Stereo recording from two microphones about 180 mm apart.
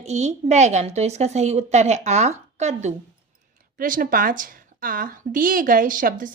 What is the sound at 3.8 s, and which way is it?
A woman's voice, 50° right (ahead or behind).